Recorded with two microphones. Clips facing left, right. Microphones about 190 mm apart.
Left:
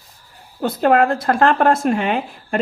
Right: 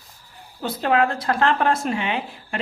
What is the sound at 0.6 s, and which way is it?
Speech, 50° left (ahead or behind).